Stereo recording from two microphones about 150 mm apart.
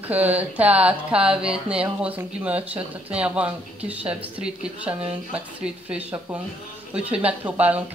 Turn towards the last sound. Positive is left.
turn(degrees=-10)  # may be behind; listen again after turning